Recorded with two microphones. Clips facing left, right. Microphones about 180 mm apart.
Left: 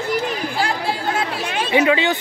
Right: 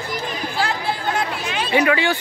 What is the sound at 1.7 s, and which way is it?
Speech, 20° left (ahead or behind).